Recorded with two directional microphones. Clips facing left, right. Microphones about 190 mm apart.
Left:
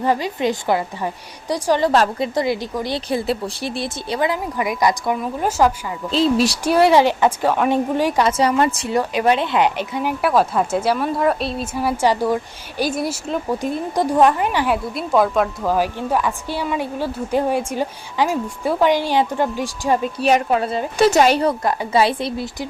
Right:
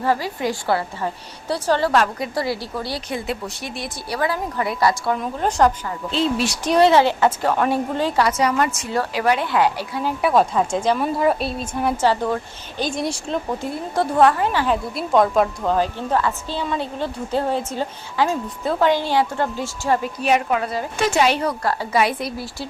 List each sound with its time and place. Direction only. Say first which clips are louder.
0.0 s a woman's voice: left 2 dB; 20° left (ahead or behind)
1.9 s speech: left 2 dB; 25° left (ahead or behind)
3.1 s a woman's voice: left 5 dB; 35° left (ahead or behind); by 5.7 s 5° left (ahead or behind)
6.1 s a woman's voice: left 4 dB; 35° left (ahead or behind)
6.7 s a woman's voice: even; 10° left (ahead or behind)
8.3 s a woman's voice: left 3 dB; 30° left (ahead or behind)
8.9 s speech: left 3 dB; 20° left (ahead or behind)
10.2 s a woman's voice: even; centre (ahead or behind)
13.6 s a woman's voice: left 2 dB; 15° left (ahead or behind)
14.9 s a woman's voice: right 1 dB; centre (ahead or behind)
20.1 s a woman's voice: left 3 dB; 35° left (ahead or behind)
21.1 s a woman's voice: left 2 dB; 40° left (ahead or behind)
21.4 s speech: left 3 dB; 20° left (ahead or behind)